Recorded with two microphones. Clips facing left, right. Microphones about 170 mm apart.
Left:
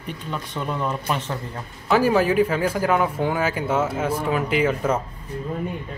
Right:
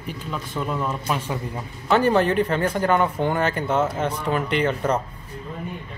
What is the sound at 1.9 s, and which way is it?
Speech, 5° left (ahead or behind).